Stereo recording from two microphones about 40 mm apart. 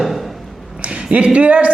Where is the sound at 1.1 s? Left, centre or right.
Right.